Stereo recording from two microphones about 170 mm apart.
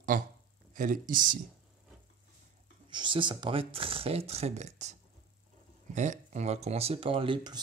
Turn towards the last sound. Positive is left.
turn(degrees=-25)  # may be behind; listen again after turning